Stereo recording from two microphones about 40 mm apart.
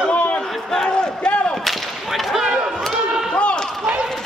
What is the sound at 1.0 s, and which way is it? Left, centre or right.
Battle cry, left.